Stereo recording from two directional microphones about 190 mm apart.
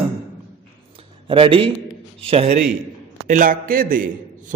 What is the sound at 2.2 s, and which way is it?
Speech, 30° right (ahead or behind).